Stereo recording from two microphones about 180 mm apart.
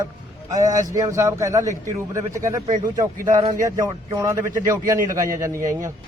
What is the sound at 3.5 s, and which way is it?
A man's voice, 20° right (ahead or behind).